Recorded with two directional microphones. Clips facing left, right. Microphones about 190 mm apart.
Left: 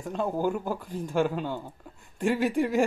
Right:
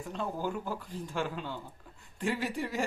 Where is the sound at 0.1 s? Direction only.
50° left (ahead or behind).